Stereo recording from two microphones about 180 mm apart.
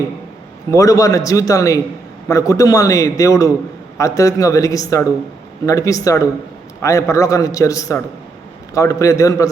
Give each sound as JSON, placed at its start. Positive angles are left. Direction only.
{"t": 0.7, "sound": "a man's voice", "side_deg": 20}